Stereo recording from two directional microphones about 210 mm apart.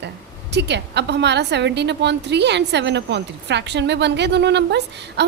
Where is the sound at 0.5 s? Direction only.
55° right (ahead or behind).